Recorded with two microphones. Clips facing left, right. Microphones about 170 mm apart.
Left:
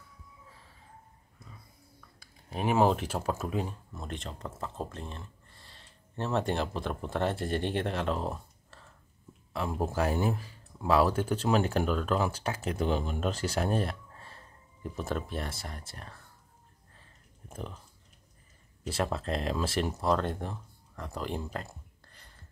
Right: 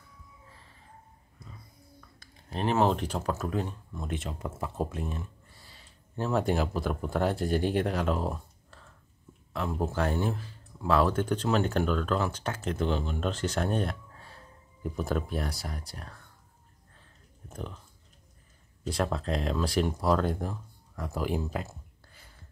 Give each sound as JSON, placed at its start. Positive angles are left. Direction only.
{"t": 2.1, "sound": "speech", "side_deg": 10}
{"t": 16.9, "sound": "a sound", "side_deg": 0}
{"t": 18.9, "sound": "speech", "side_deg": 5}